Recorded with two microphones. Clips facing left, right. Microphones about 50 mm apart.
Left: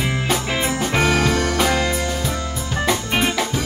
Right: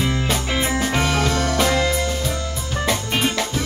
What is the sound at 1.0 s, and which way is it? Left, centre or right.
Music, centre.